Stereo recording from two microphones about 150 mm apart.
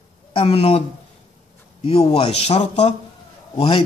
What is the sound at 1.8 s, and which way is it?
Speech, 45° left (ahead or behind).